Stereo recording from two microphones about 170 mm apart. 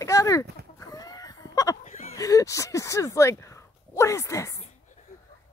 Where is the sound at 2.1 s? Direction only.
20° left (ahead or behind).